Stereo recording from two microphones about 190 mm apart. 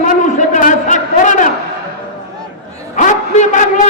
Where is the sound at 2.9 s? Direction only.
40° left (ahead or behind).